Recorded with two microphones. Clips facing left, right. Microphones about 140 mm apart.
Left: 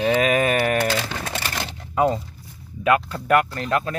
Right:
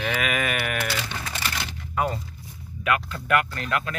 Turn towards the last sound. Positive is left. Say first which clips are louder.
# left 5 dB
turn(degrees=35)  # may be behind; listen again after turning